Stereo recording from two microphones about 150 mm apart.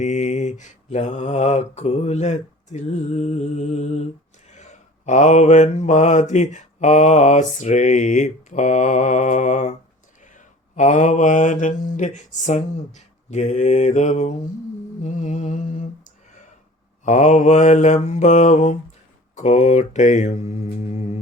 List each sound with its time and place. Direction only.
0.0 s mantra: 50° left (ahead or behind)